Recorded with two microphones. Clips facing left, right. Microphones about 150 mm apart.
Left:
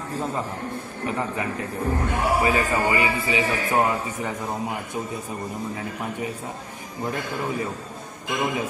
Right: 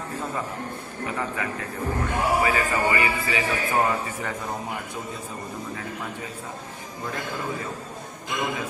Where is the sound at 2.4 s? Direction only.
20° left (ahead or behind).